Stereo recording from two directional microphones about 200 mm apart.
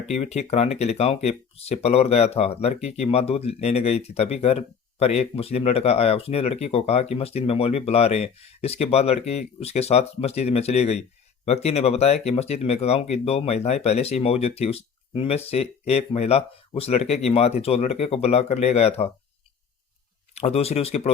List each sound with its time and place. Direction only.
0.2 s speech: 30° left (ahead or behind)
20.3 s speech: 30° left (ahead or behind)